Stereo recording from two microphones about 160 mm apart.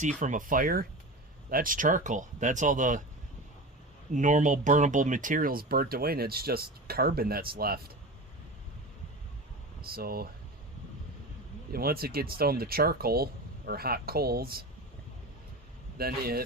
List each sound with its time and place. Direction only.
0.2 s speech: 55° right (ahead or behind)
4.1 s speech: 50° right (ahead or behind); by 7.9 s 70° right (ahead or behind)
9.9 s speech: 70° right (ahead or behind)
11.7 s speech: 70° right (ahead or behind)
16.0 s speech: 70° right (ahead or behind)